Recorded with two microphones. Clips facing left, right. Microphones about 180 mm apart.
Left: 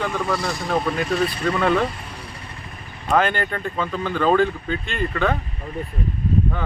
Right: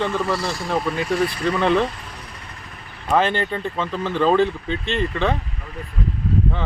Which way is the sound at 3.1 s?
30° right (ahead or behind).